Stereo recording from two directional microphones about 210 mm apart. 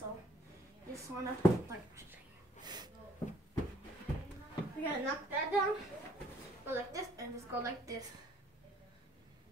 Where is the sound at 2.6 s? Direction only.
20° right (ahead or behind).